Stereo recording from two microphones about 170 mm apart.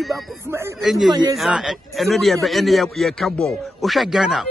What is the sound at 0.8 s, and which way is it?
A man's voice, centre (ahead or behind).